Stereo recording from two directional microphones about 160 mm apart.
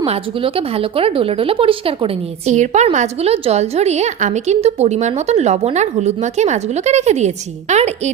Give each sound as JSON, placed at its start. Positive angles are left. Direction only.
{"t": 0.0, "sound": "a woman's voice", "side_deg": -35}
{"t": 2.5, "sound": "a woman's voice", "side_deg": -50}